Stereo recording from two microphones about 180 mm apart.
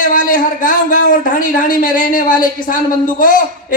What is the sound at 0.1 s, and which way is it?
A man's voice, 50° left (ahead or behind).